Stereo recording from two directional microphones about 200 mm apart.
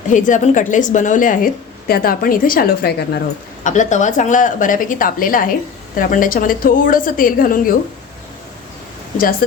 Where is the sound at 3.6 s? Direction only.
40° left (ahead or behind).